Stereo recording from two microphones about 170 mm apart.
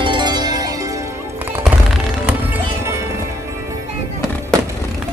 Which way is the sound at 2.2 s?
15° right (ahead or behind).